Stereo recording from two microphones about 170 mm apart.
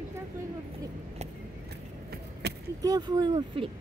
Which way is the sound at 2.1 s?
70° right (ahead or behind).